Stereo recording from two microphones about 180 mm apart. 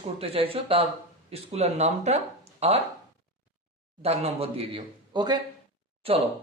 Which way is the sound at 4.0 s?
35° right (ahead or behind).